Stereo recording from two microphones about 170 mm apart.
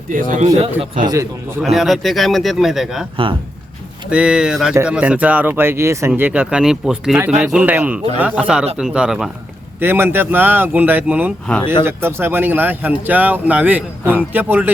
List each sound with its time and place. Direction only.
0.1 s speech: 50° right (ahead or behind)
0.5 s speech: 35° right (ahead or behind)
1.0 s a man's voice: 20° right (ahead or behind)
1.6 s a man's voice: centre (ahead or behind)
4.1 s a man's voice: 5° right (ahead or behind)